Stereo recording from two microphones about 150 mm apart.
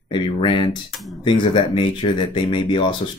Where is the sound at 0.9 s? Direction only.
Centre (ahead or behind).